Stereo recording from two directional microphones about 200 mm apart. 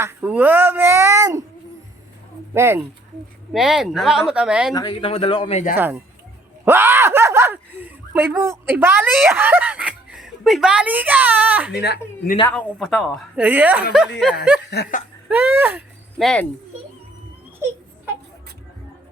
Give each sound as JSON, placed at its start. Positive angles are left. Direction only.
{"t": 0.0, "sound": "a sound", "side_deg": -10}
{"t": 2.5, "sound": "a woman's voice", "side_deg": -10}
{"t": 4.7, "sound": "a man's voice", "side_deg": 20}
{"t": 5.7, "sound": "a woman's voice", "side_deg": -10}
{"t": 11.7, "sound": "speech", "side_deg": 55}
{"t": 12.5, "sound": "a woman's voice", "side_deg": 0}
{"t": 14.7, "sound": "speech", "side_deg": 50}
{"t": 15.3, "sound": "a woman's voice", "side_deg": -10}
{"t": 16.1, "sound": "speech", "side_deg": 0}